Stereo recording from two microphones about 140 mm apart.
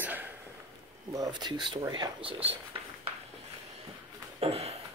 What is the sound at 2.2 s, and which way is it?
Speech, 40° right (ahead or behind).